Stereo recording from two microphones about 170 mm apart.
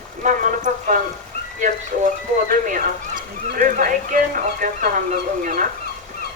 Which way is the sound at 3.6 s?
50° right (ahead or behind).